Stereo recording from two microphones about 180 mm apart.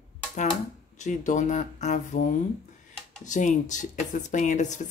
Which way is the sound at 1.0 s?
45° left (ahead or behind).